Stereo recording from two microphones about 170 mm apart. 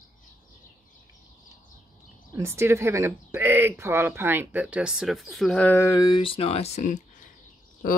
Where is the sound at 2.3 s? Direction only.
15° right (ahead or behind).